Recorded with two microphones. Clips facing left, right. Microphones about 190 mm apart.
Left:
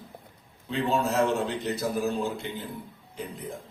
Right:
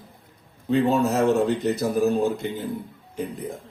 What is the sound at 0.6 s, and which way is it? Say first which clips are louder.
A man's voice: right 7 dB; 45° right (ahead or behind).